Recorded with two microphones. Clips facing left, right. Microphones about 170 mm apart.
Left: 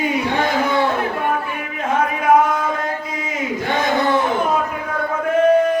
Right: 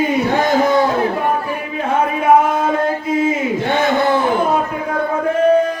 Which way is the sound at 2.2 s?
25° right (ahead or behind).